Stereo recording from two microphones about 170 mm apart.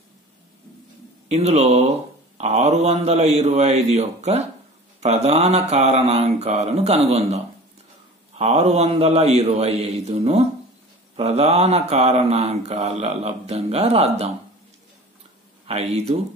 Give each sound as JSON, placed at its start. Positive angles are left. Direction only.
{"t": 1.3, "sound": "speech", "side_deg": -40}
{"t": 15.6, "sound": "speech", "side_deg": -40}